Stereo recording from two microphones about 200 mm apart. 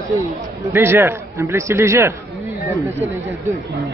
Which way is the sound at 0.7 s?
10° right (ahead or behind).